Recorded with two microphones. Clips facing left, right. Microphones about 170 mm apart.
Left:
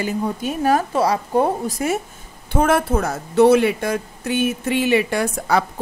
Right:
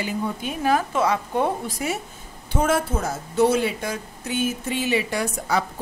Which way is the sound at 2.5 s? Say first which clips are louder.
Left 5 dB; 60° left (ahead or behind).